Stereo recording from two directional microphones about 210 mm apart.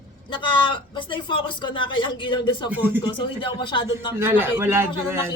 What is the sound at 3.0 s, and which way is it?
Speech, 25° left (ahead or behind).